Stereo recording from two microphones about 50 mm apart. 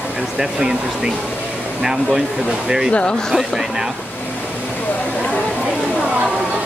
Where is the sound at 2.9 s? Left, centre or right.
Centre.